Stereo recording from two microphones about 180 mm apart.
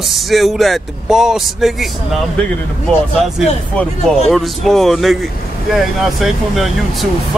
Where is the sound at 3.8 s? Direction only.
Centre (ahead or behind).